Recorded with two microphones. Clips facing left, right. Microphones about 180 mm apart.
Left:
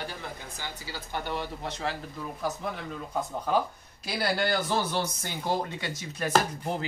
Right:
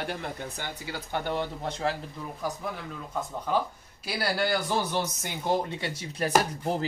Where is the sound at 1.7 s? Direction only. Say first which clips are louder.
Right 3 dB; 50° right (ahead or behind).